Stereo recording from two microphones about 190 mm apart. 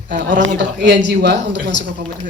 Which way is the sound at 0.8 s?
65° right (ahead or behind).